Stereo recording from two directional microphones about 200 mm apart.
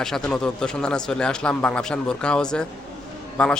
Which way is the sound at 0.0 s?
5° left (ahead or behind).